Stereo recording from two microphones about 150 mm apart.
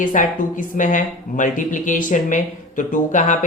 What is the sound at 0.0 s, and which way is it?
Speech, 60° left (ahead or behind).